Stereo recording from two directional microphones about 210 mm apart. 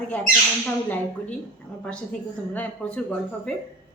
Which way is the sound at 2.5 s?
5° left (ahead or behind).